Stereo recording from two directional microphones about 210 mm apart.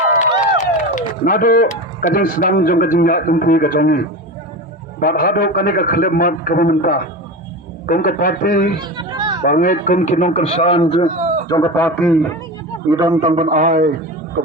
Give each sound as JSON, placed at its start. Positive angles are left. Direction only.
{"t": 0.6, "sound": "a man's voice", "side_deg": 40}
{"t": 8.8, "sound": "a sound", "side_deg": -20}
{"t": 9.4, "sound": "a man's voice", "side_deg": 40}
{"t": 11.1, "sound": "a sound", "side_deg": -35}
{"t": 11.4, "sound": "speech", "side_deg": 20}
{"t": 11.7, "sound": "a man's voice", "side_deg": 10}
{"t": 13.0, "sound": "a man's voice", "side_deg": -15}
{"t": 13.3, "sound": "a man's voice", "side_deg": -35}